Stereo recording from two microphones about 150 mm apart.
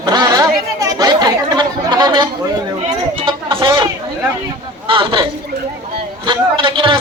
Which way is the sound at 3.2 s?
35° right (ahead or behind).